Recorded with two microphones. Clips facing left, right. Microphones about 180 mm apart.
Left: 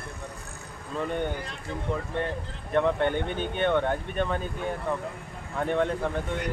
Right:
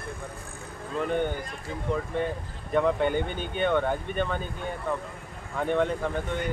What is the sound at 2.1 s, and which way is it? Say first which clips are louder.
Speech: right 1 dB; 5° right (ahead or behind).